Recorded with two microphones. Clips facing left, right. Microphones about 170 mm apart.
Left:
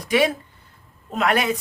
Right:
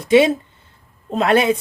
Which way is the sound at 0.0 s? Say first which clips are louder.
Right 7 dB; 25° right (ahead or behind).